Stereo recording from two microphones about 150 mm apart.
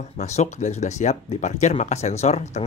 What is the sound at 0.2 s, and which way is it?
Speech, 50° left (ahead or behind).